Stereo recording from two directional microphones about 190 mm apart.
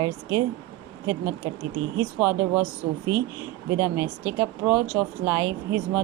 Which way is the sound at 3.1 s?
20° left (ahead or behind).